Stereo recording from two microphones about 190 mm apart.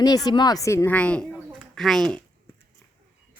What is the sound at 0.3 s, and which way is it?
A woman's voice, 20° left (ahead or behind).